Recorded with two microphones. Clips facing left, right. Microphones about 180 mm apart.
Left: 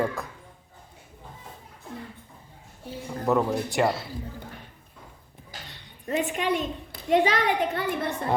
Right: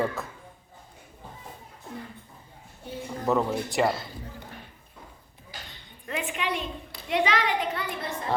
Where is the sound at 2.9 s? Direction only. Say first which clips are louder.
Left 1 dB; 5° left (ahead or behind).